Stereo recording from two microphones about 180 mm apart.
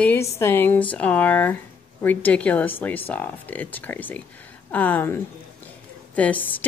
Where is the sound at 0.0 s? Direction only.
10° left (ahead or behind).